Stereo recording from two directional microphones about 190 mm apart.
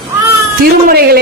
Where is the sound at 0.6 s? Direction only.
55° right (ahead or behind).